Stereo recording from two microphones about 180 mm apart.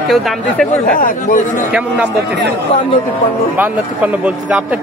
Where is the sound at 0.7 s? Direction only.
50° left (ahead or behind).